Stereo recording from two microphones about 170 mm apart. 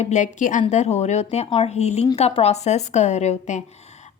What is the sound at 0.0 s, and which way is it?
A woman's voice, 45° left (ahead or behind).